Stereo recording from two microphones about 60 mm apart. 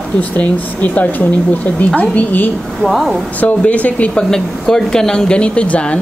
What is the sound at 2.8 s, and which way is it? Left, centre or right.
Speech, centre.